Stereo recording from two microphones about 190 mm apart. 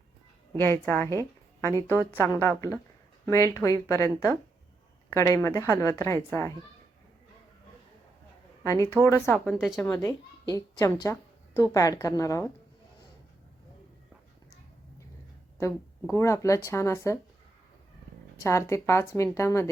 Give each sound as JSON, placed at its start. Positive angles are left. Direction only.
{"t": 0.6, "sound": "a woman's voice", "side_deg": 10}
{"t": 5.1, "sound": "a woman's voice", "side_deg": 15}
{"t": 8.6, "sound": "a woman's voice", "side_deg": 15}
{"t": 9.4, "sound": "speech", "side_deg": 0}
{"t": 9.9, "sound": "a woman's voice", "side_deg": 15}
{"t": 16.1, "sound": "a woman's voice", "side_deg": 15}
{"t": 18.3, "sound": "a woman's voice", "side_deg": 15}